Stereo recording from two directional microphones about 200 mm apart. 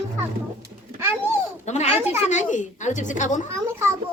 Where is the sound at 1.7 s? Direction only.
35° left (ahead or behind).